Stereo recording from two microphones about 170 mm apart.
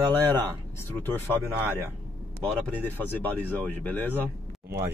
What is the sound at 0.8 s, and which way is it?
Speech, 10° left (ahead or behind).